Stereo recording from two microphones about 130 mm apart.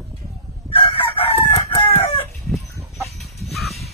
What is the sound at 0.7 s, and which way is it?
Chicken, 45° left (ahead or behind).